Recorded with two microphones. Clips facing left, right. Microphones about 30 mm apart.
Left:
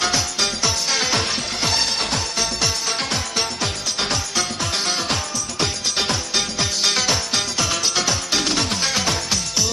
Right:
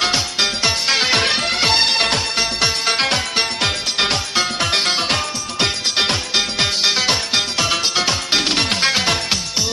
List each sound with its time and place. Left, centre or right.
0.0 s music: right
1.2 s music: right
2.3 s music: right
3.0 s music: right
6.8 s music: right
7.3 s music: right